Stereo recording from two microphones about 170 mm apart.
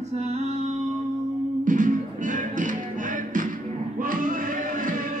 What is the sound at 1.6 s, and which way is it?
Music, 50° right (ahead or behind).